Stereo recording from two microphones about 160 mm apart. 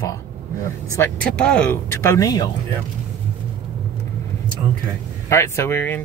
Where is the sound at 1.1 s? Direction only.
5° left (ahead or behind); by 2.5 s 25° left (ahead or behind).